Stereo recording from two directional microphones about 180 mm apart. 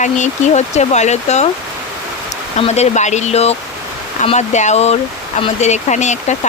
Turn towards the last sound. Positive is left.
turn(degrees=40)  # may be behind; listen again after turning